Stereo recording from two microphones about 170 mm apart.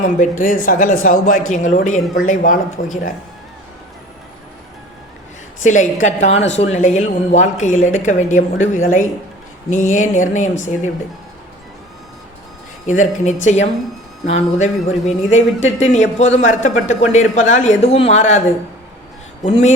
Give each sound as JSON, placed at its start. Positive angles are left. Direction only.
{"t": 0.0, "sound": "speech", "side_deg": 50}
{"t": 5.6, "sound": "speech", "side_deg": 45}
{"t": 12.9, "sound": "speech", "side_deg": 45}
{"t": 19.5, "sound": "speech", "side_deg": 40}